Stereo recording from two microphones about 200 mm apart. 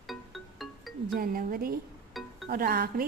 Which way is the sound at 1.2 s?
45° right (ahead or behind).